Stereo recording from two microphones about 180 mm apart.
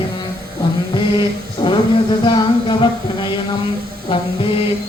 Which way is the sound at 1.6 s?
30° left (ahead or behind).